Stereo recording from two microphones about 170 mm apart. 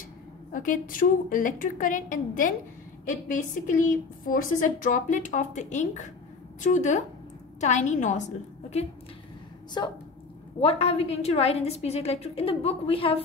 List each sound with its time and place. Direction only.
0.5 s a woman's voice: 50° left (ahead or behind)
9.8 s a woman's voice: 25° left (ahead or behind)
10.6 s a woman's voice: 35° left (ahead or behind)